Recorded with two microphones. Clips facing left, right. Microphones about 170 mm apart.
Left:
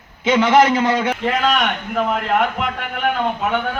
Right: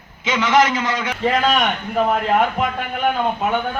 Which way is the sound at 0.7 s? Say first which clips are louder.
Left 5 dB; 55° left (ahead or behind).